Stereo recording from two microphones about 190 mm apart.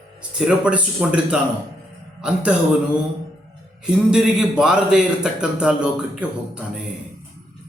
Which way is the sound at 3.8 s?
5° right (ahead or behind).